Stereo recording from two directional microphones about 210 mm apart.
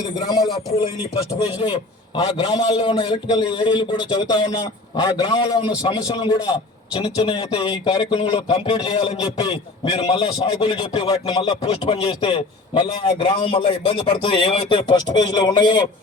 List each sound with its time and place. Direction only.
1.6 s a man's voice: 25° left (ahead or behind)